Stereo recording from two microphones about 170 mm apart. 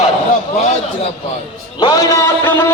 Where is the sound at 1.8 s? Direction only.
25° left (ahead or behind).